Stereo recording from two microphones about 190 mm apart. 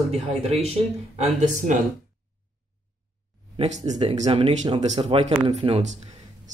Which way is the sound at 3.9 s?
35° right (ahead or behind).